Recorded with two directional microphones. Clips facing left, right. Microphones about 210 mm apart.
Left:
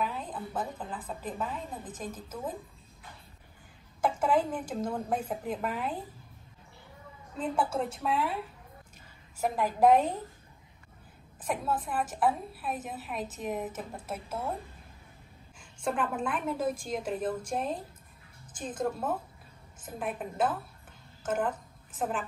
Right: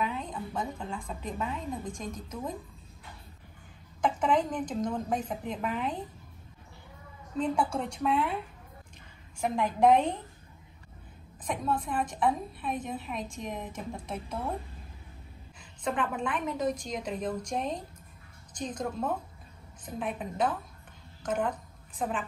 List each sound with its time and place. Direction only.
0.0 s a woman's voice: 5° left (ahead or behind)
4.0 s a woman's voice: 5° left (ahead or behind)
7.3 s a woman's voice: 5° left (ahead or behind)
9.4 s a woman's voice: 5° left (ahead or behind)
11.4 s a woman's voice: 5° left (ahead or behind)
15.8 s a woman's voice: 5° left (ahead or behind)